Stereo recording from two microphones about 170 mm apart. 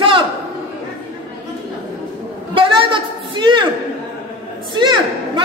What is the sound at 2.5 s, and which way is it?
A woman's voice, 30° right (ahead or behind).